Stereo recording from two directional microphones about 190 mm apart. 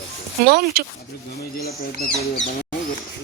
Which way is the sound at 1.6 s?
50° left (ahead or behind).